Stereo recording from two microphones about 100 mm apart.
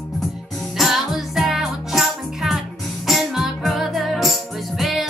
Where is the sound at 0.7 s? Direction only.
5° right (ahead or behind).